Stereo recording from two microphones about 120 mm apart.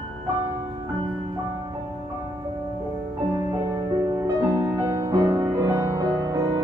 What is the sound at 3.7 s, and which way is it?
Music, 25° right (ahead or behind).